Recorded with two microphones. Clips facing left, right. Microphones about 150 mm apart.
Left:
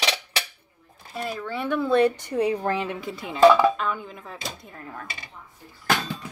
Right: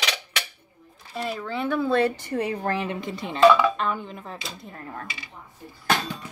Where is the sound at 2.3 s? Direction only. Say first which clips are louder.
Left 3 dB; 15° left (ahead or behind).